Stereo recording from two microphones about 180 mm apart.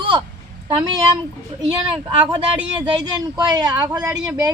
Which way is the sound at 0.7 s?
25° right (ahead or behind).